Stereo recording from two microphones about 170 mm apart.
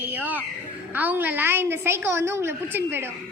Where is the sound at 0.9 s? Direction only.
10° right (ahead or behind).